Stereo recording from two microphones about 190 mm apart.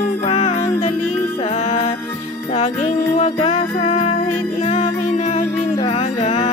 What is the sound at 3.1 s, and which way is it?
Music, 35° left (ahead or behind).